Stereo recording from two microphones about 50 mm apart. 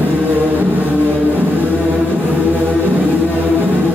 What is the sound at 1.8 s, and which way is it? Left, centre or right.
Music, right.